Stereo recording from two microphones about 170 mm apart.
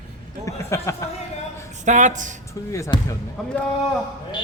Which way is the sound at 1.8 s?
45° right (ahead or behind).